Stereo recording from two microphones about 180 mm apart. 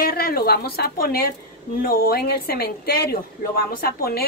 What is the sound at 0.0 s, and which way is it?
A woman's voice, 55° left (ahead or behind).